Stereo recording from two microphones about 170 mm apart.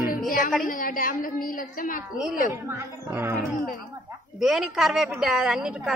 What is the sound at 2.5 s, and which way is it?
Speech, 15° right (ahead or behind).